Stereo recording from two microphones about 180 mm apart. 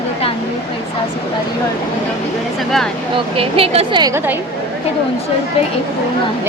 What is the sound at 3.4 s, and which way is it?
A woman's voice, 30° right (ahead or behind).